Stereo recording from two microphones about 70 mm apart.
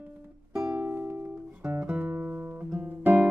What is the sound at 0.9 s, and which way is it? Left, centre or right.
Music, right.